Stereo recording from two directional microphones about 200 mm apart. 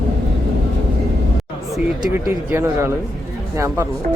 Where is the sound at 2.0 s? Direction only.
10° right (ahead or behind).